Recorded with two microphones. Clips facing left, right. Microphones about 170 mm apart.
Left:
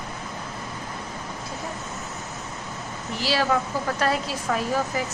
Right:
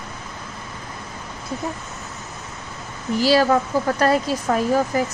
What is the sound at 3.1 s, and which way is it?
Speech, 40° right (ahead or behind).